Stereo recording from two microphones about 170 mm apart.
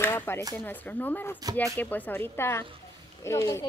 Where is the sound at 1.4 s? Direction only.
20° right (ahead or behind).